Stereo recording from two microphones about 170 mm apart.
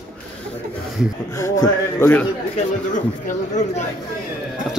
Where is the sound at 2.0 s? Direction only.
10° left (ahead or behind).